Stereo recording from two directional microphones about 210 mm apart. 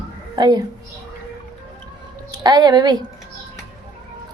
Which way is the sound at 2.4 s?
20° right (ahead or behind).